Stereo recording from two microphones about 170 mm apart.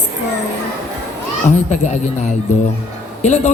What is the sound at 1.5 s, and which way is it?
A woman's voice, 45° left (ahead or behind).